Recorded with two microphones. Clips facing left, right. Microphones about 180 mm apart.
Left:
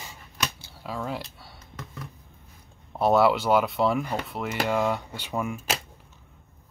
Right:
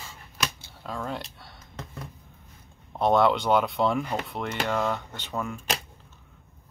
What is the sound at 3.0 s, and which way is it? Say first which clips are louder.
Speech: left 1 dB; 5° left (ahead or behind).